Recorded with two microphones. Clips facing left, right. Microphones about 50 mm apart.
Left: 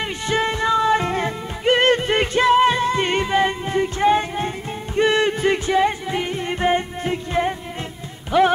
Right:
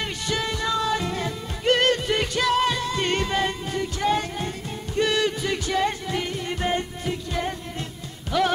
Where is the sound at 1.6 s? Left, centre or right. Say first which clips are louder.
Left 4 dB; left.